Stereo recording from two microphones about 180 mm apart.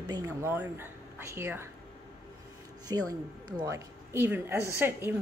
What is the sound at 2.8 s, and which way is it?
Speech, 20° right (ahead or behind).